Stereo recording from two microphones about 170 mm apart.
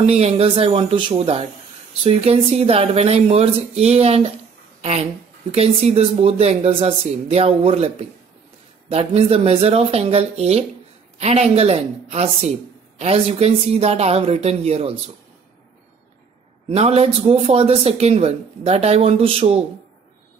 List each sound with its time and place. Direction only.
0.0 s speech: 35° right (ahead or behind)
5.5 s speech: 35° right (ahead or behind)
16.6 s speech: 35° right (ahead or behind)